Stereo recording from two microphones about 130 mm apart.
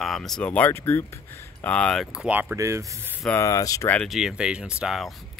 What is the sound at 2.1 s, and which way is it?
Speech, 10° right (ahead or behind).